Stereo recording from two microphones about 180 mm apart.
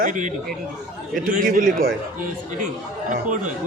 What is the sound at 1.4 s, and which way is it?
Speech, 50° right (ahead or behind).